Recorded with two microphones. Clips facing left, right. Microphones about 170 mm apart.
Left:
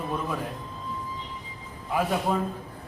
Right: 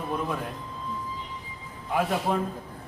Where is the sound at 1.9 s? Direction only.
Centre (ahead or behind).